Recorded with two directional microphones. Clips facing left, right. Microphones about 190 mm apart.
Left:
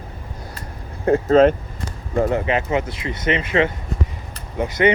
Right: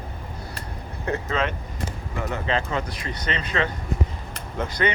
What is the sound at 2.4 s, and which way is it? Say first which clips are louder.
Speech: left 5 dB; 20° left (ahead or behind).